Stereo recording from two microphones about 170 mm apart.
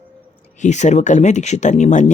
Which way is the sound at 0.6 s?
45° left (ahead or behind).